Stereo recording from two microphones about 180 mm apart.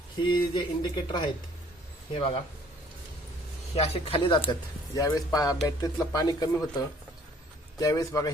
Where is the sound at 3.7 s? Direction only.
35° left (ahead or behind).